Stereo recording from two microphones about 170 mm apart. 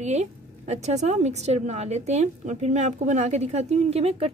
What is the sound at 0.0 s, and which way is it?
A woman's voice, 40° right (ahead or behind).